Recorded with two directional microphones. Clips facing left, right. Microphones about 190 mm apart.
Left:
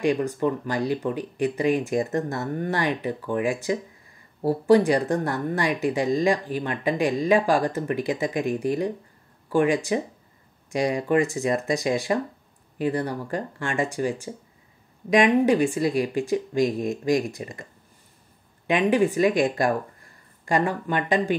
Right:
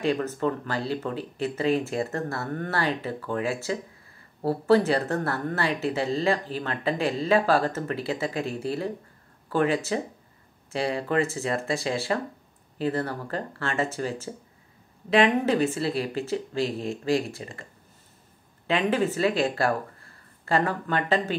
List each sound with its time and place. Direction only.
0.0 s speech: 15° left (ahead or behind)
18.7 s speech: 15° left (ahead or behind)